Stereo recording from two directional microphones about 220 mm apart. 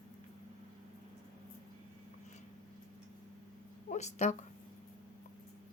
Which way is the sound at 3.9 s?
30° left (ahead or behind).